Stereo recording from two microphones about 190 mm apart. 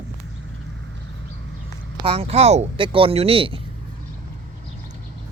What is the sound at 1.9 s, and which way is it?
Speech, 30° right (ahead or behind).